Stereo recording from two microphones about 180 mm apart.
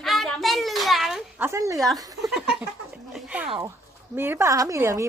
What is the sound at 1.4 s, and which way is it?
Speech, 15° right (ahead or behind).